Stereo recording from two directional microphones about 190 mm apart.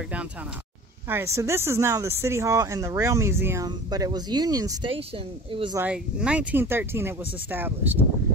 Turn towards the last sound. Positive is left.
turn(degrees=-10)  # may be behind; listen again after turning